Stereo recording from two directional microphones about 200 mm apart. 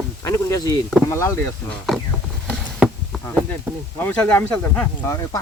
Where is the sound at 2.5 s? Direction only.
Centre (ahead or behind).